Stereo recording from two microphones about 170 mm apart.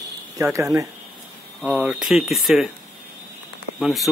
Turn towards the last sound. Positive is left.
turn(degrees=0)  # may be behind; listen again after turning